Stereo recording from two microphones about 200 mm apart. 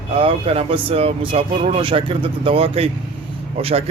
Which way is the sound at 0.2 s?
30° right (ahead or behind).